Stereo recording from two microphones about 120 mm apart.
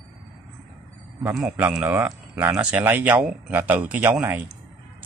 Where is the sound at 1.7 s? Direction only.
15° right (ahead or behind).